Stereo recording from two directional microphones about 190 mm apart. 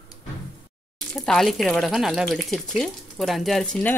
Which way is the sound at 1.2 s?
Centre (ahead or behind).